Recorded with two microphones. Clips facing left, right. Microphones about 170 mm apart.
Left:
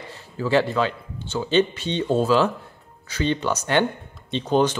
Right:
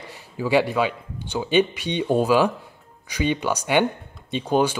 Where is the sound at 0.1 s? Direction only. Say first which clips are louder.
Even; 10° right (ahead or behind).